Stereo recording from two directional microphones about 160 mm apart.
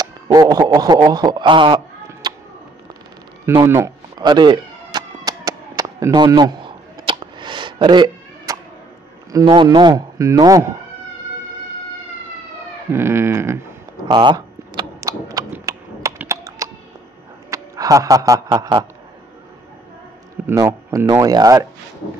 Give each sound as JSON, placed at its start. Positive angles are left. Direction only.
{"t": 0.0, "sound": "speech", "side_deg": -25}
{"t": 2.2, "sound": "a sound", "side_deg": -25}
{"t": 3.4, "sound": "speech", "side_deg": -15}
{"t": 4.2, "sound": "a sound", "side_deg": -30}
{"t": 9.3, "sound": "speech", "side_deg": -30}
{"t": 12.9, "sound": "speech", "side_deg": -15}
{"t": 14.1, "sound": "a sound", "side_deg": -30}
{"t": 17.5, "sound": "speech", "side_deg": -20}
{"t": 20.4, "sound": "speech", "side_deg": -20}